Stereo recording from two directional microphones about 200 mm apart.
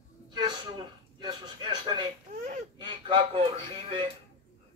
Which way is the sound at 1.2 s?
25° right (ahead or behind).